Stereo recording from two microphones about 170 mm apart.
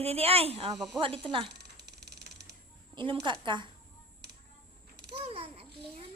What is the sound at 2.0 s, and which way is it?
Mechanisms, 75° right (ahead or behind).